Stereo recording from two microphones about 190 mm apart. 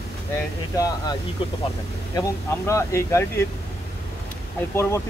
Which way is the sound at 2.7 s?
15° left (ahead or behind).